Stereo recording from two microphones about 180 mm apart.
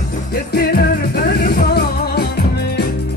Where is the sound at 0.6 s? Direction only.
60° left (ahead or behind).